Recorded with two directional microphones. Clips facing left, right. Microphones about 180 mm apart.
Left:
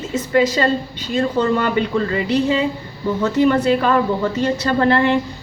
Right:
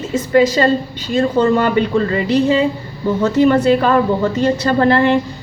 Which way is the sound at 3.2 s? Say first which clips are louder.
Right 3 dB; 40° right (ahead or behind).